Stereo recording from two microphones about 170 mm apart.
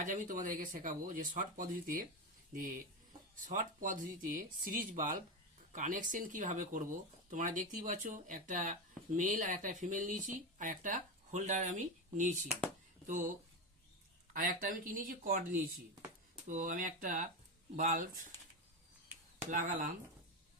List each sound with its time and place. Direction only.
0.0 s speech: 50° right (ahead or behind)
3.4 s speech: 50° right (ahead or behind)
14.3 s speech: 55° right (ahead or behind)
16.5 s speech: 50° right (ahead or behind)
19.5 s speech: 50° right (ahead or behind)